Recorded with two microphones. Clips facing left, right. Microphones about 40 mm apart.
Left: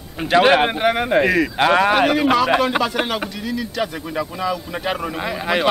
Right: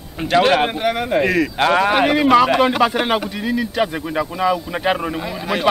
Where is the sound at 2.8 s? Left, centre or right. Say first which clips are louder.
Right 4 dB; right.